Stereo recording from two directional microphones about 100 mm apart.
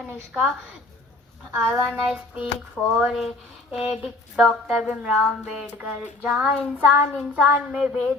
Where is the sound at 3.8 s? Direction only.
80° left.